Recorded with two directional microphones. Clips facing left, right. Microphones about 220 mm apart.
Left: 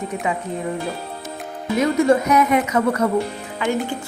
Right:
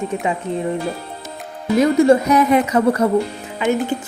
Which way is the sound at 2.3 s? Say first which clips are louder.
Right 3 dB; 30° right (ahead or behind).